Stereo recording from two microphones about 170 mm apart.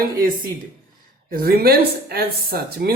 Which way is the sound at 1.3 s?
60° right (ahead or behind).